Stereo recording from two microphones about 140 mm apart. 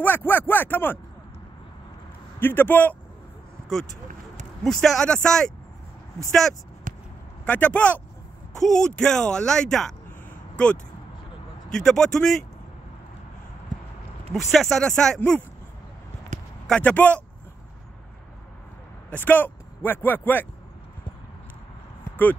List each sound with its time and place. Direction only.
0.0 s speech: 15° left (ahead or behind)
2.4 s speech: 15° left (ahead or behind)
4.6 s speech: 5° left (ahead or behind)
6.9 s a sound: 70° right (ahead or behind)
7.4 s speech: 10° left (ahead or behind)
10.5 s a sound: 10° left (ahead or behind)
11.7 s speech: 5° left (ahead or behind)
14.3 s speech: centre (ahead or behind)
16.3 s a sound: 60° right (ahead or behind)
16.6 s speech: 10° left (ahead or behind)
19.0 s speech: 10° left (ahead or behind)